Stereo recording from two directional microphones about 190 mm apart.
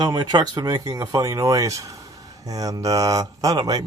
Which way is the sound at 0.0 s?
20° right (ahead or behind).